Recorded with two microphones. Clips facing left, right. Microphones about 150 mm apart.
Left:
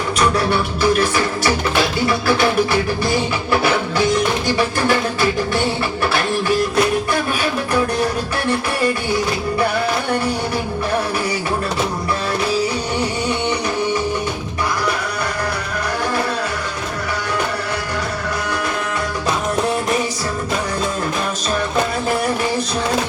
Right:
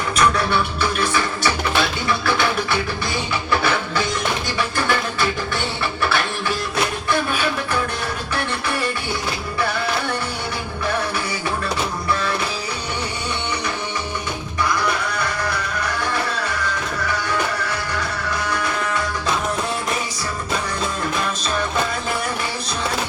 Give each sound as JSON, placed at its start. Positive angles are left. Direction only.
{"t": 0.8, "sound": "music", "side_deg": 35}
{"t": 4.5, "sound": "music", "side_deg": 40}